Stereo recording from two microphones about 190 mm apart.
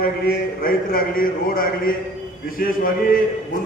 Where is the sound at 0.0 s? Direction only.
50° left (ahead or behind).